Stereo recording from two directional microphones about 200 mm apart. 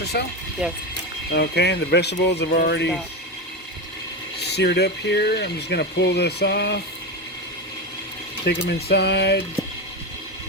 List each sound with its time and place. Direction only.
0.0 s speech: 55° left (ahead or behind)
0.6 s speech: 5° right (ahead or behind)
1.4 s speech: 55° left (ahead or behind)
4.4 s speech: 55° left (ahead or behind)
8.4 s speech: 55° left (ahead or behind)